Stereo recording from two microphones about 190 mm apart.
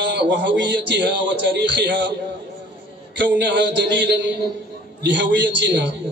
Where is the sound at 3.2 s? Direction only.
65° right (ahead or behind).